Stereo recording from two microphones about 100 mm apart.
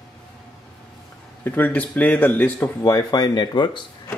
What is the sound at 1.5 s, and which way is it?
A man's voice, 20° left (ahead or behind).